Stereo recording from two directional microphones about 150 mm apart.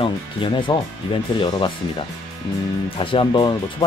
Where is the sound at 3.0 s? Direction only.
35° left (ahead or behind).